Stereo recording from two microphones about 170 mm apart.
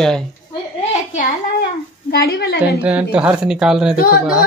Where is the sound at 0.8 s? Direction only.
45° left (ahead or behind).